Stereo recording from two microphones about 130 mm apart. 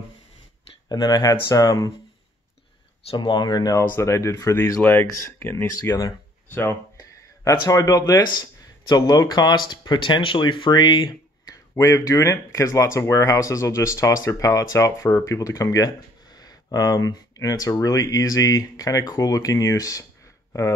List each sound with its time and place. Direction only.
0.8 s speech: 30° left (ahead or behind)
3.1 s speech: 35° left (ahead or behind)